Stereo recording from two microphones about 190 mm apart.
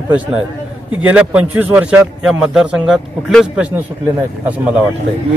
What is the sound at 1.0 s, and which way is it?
A man's voice, 5° right (ahead or behind).